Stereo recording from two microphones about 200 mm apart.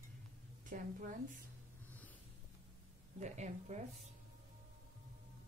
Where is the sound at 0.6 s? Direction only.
40° right (ahead or behind).